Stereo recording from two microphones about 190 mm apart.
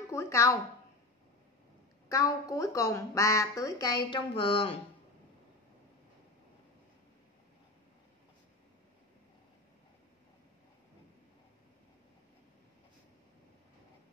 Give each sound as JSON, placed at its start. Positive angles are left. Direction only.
{"t": 0.1, "sound": "a woman's voice", "side_deg": 15}
{"t": 2.0, "sound": "a woman's voice", "side_deg": 15}